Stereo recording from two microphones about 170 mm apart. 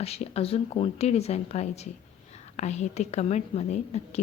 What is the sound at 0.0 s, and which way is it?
A woman's voice, 35° left (ahead or behind).